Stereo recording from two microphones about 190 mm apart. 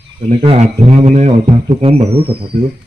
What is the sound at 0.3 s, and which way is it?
Speech, 35° right (ahead or behind).